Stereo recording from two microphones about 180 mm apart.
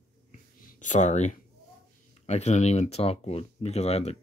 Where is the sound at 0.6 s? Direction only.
45° left (ahead or behind).